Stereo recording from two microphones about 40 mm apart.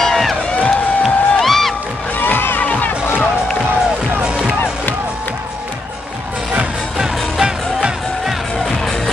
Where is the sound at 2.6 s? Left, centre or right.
Left.